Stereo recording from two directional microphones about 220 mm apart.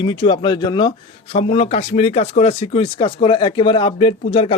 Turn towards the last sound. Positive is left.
turn(degrees=25)  # may be behind; listen again after turning